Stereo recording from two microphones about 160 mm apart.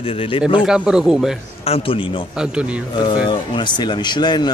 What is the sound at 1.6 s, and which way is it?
Speech, 35° left (ahead or behind).